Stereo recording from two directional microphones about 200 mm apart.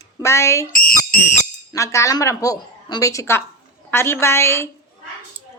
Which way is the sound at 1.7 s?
15° left (ahead or behind).